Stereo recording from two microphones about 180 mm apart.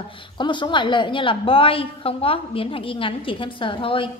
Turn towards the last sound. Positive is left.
turn(degrees=30)  # may be behind; listen again after turning